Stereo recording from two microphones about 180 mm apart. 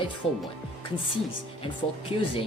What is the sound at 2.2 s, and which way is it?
Speech, 30° left (ahead or behind).